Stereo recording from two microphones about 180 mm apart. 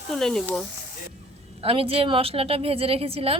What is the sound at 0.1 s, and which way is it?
Speech, 5° left (ahead or behind).